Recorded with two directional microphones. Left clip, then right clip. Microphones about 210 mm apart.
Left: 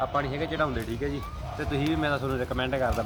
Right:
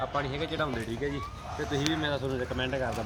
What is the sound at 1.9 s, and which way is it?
Speech, centre (ahead or behind).